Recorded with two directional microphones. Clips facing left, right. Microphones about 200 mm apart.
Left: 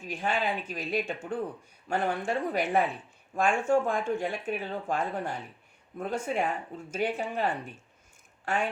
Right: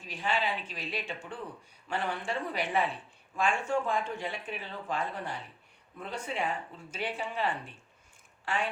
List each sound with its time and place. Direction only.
0.0 s speech: 45° left (ahead or behind)